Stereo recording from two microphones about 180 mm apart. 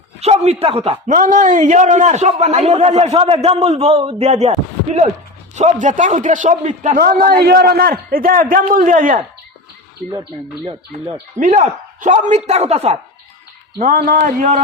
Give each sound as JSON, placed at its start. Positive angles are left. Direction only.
{"t": 0.2, "sound": "speech", "side_deg": -35}
{"t": 1.0, "sound": "a man's voice", "side_deg": -45}
{"t": 6.9, "sound": "a man's voice", "side_deg": -50}
{"t": 10.7, "sound": "speech", "side_deg": -25}
{"t": 11.3, "sound": "a man's voice", "side_deg": -40}
{"t": 13.7, "sound": "a man's voice", "side_deg": -50}